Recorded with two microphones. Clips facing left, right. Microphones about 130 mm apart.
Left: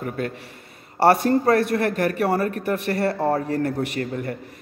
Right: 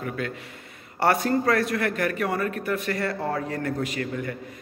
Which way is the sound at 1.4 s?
30° left (ahead or behind).